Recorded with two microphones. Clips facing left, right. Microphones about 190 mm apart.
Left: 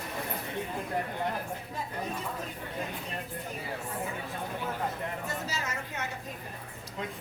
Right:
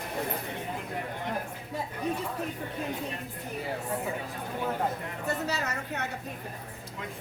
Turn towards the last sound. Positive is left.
turn(degrees=-65)  # may be behind; listen again after turning